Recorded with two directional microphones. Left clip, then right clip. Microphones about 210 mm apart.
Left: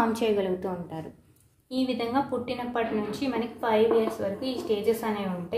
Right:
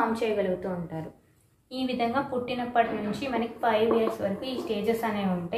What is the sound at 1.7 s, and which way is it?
A woman's voice, 45° left (ahead or behind).